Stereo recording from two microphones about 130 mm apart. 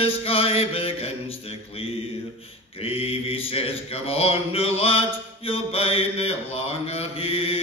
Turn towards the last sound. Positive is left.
turn(degrees=45)  # may be behind; listen again after turning